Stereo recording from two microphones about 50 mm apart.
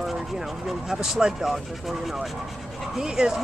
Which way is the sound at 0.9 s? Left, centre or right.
Centre.